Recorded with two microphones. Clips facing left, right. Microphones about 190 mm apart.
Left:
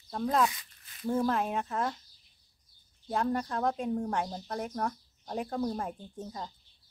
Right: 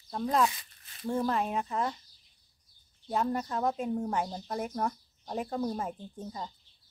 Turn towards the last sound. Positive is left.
turn(degrees=0)  # may be behind; listen again after turning